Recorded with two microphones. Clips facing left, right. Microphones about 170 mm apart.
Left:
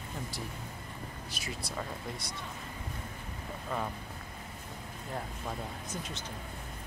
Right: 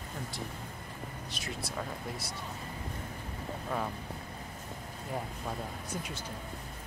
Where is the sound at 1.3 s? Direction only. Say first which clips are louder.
Right 1 dB; centre (ahead or behind).